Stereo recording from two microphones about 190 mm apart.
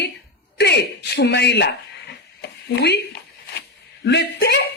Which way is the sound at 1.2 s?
65° left (ahead or behind).